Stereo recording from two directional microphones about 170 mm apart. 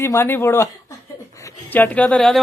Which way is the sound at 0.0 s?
15° left (ahead or behind).